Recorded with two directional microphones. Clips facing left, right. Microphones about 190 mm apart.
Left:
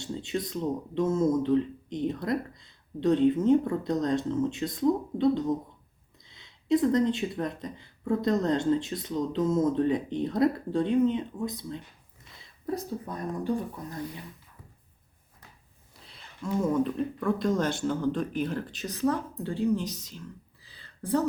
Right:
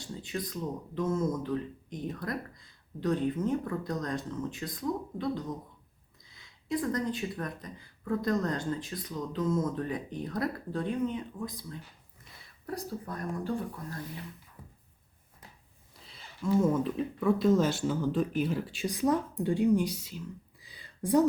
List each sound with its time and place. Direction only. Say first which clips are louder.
0.0 s speech: left 5 dB; 25° left (ahead or behind)
16.0 s speech: even; centre (ahead or behind)